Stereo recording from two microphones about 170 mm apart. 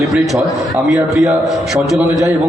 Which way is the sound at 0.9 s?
15° right (ahead or behind).